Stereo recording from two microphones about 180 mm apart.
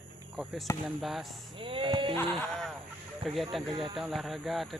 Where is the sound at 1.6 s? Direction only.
30° right (ahead or behind).